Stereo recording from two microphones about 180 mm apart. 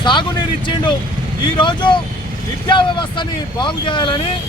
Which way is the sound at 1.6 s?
25° left (ahead or behind).